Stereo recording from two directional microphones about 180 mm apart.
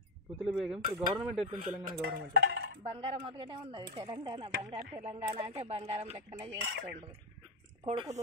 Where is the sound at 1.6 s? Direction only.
45° right (ahead or behind).